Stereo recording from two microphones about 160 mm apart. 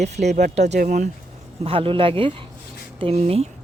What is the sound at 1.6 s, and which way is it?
Speech, 35° right (ahead or behind).